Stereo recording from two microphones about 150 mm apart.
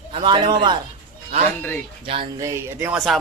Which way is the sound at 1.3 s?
40° right (ahead or behind).